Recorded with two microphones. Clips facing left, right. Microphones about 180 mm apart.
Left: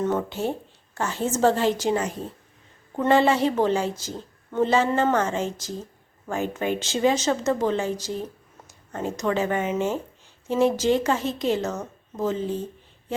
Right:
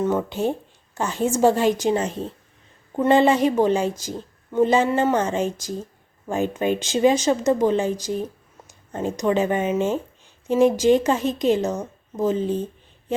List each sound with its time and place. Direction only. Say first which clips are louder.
0.0 s a woman's voice: right 3 dB; 10° right (ahead or behind)